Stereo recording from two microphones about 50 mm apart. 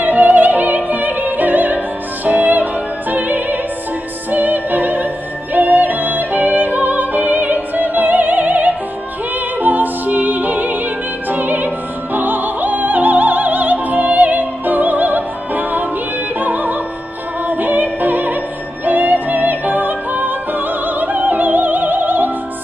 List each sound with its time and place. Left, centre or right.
0.0 s opera: right
2.2 s music: right